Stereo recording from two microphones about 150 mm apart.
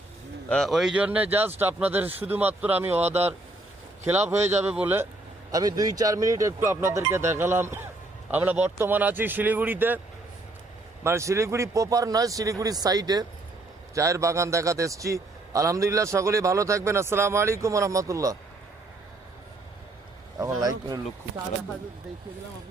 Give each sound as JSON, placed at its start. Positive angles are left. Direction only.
{"t": 0.4, "sound": "speech", "side_deg": 5}
{"t": 3.0, "sound": "speech", "side_deg": -45}
{"t": 4.1, "sound": "speech", "side_deg": -15}
{"t": 5.5, "sound": "a man's voice", "side_deg": -25}
{"t": 11.0, "sound": "a man's voice", "side_deg": -20}
{"t": 20.4, "sound": "a man's voice", "side_deg": -25}